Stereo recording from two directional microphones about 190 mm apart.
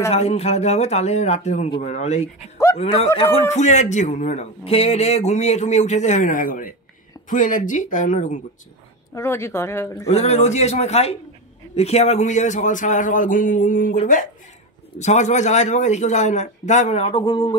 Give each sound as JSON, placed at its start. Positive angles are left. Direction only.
{"t": 0.1, "sound": "speech", "side_deg": 35}
{"t": 9.1, "sound": "speech", "side_deg": 15}
{"t": 10.0, "sound": "speech", "side_deg": 35}